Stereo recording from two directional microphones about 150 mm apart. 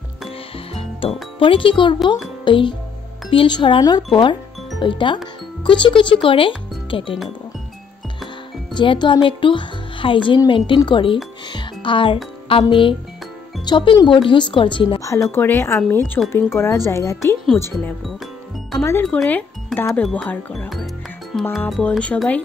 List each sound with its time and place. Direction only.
0.7 s speech: 35° left (ahead or behind)
8.7 s speech: 30° left (ahead or behind)
11.5 s music: 35° left (ahead or behind)
12.4 s speech: 35° left (ahead or behind)
15.0 s speech: 20° left (ahead or behind)
19.0 s speech: 5° left (ahead or behind)
20.7 s music: centre (ahead or behind)
21.5 s speech: centre (ahead or behind)